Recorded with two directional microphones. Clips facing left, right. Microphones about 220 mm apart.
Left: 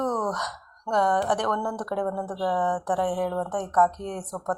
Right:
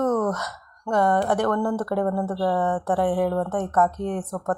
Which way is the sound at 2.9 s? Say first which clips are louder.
Right 5 dB; 10° right (ahead or behind).